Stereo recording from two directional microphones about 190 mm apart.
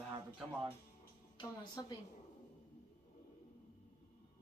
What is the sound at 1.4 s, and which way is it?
Speech, 25° left (ahead or behind).